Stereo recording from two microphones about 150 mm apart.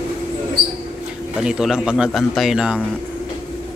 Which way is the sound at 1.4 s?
5° right (ahead or behind).